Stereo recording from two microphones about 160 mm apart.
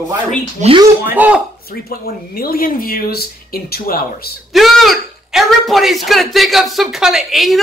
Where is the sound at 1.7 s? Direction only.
70° left (ahead or behind).